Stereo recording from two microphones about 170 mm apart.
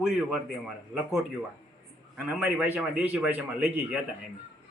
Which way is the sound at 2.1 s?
5° right (ahead or behind).